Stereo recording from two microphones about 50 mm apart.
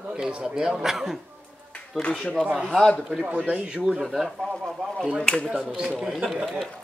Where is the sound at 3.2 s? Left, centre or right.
Right.